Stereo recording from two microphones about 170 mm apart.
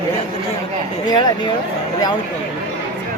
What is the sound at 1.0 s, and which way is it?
Speech, 25° left (ahead or behind).